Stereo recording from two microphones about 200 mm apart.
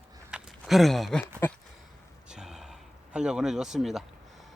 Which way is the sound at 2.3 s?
5° right (ahead or behind).